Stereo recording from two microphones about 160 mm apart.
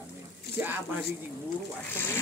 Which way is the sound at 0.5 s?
15° right (ahead or behind).